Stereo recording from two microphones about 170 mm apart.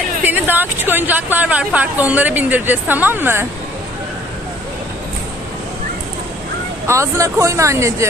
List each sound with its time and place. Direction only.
0.2 s speech: 10° right (ahead or behind)
6.9 s speech: 15° right (ahead or behind)